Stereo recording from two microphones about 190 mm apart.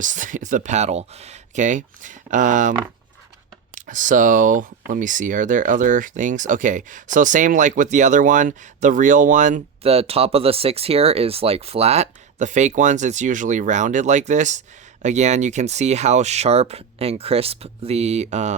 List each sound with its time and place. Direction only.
0.0 s speech: 40° right (ahead or behind)
3.8 s speech: 45° right (ahead or behind)